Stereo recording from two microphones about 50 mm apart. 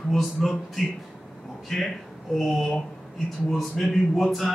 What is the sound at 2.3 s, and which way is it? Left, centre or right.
Speech, centre.